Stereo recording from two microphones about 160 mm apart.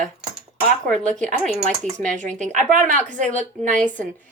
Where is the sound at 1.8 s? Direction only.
50° right (ahead or behind).